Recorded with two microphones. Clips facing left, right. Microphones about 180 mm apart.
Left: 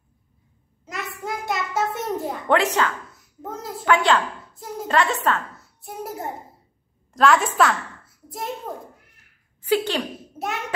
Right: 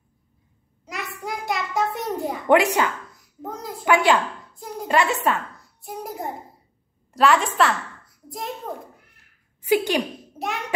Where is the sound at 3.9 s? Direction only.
10° right (ahead or behind).